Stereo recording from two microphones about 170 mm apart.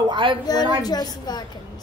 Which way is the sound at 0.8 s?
25° left (ahead or behind).